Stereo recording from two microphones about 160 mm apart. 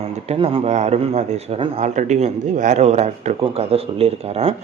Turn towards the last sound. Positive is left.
turn(degrees=-40)  # may be behind; listen again after turning